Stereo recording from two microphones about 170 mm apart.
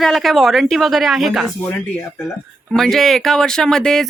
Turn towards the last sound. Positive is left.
turn(degrees=5)  # may be behind; listen again after turning